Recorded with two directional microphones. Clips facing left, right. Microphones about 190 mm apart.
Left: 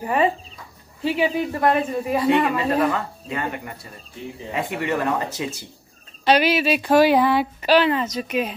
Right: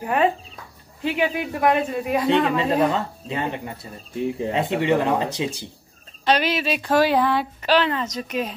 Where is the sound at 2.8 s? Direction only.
20° right (ahead or behind).